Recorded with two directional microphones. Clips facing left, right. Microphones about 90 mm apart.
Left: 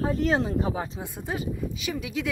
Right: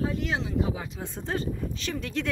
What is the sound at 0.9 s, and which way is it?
Speech, 10° left (ahead or behind).